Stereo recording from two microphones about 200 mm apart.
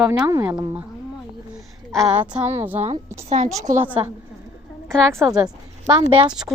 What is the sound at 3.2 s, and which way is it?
Speech, 35° right (ahead or behind).